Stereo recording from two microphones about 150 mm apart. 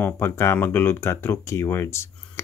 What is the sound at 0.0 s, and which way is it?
Speech, 15° left (ahead or behind).